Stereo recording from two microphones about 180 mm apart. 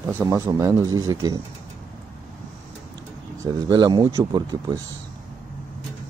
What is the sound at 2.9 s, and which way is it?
Speech, 20° right (ahead or behind).